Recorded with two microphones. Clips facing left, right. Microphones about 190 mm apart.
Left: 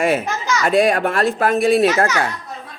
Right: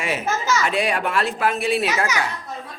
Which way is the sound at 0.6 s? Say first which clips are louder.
Left 7 dB; 40° left (ahead or behind).